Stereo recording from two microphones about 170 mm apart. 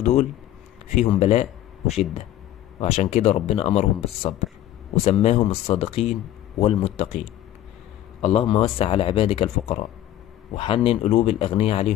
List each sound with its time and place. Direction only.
0.0 s speech: 45° left (ahead or behind)
8.2 s speech: 35° left (ahead or behind)